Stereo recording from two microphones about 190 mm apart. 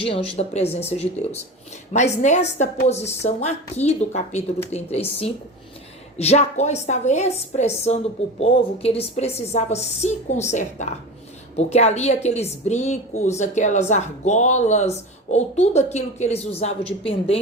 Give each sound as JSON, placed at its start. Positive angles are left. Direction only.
{"t": 0.0, "sound": "speech", "side_deg": 30}